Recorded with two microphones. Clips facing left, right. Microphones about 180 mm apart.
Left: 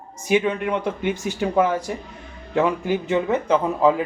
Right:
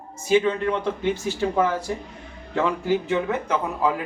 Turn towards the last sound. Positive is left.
turn(degrees=20)  # may be behind; listen again after turning